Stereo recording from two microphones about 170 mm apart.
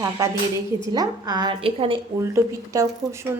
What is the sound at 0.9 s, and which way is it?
A woman's voice, 25° right (ahead or behind).